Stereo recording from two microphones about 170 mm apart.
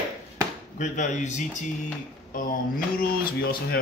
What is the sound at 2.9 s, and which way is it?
Speech, 60° left (ahead or behind).